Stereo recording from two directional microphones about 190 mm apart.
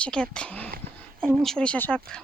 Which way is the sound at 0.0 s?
5° left (ahead or behind).